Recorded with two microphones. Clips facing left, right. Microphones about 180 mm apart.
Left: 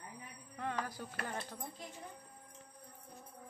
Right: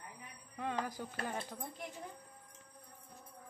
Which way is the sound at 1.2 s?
15° right (ahead or behind).